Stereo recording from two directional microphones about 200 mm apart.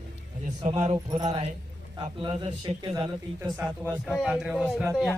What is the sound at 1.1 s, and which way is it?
A man's voice, 20° right (ahead or behind).